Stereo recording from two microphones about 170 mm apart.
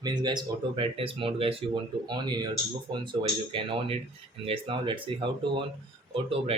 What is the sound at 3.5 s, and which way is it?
Speech, 30° right (ahead or behind).